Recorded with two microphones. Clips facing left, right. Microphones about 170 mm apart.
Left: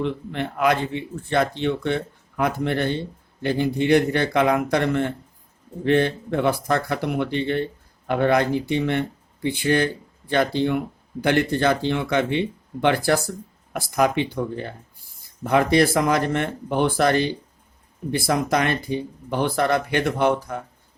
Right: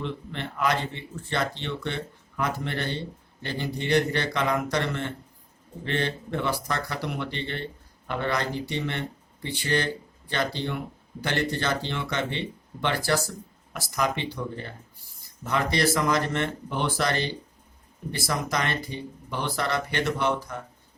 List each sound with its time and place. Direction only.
0.0 s a man's voice: 50° left (ahead or behind)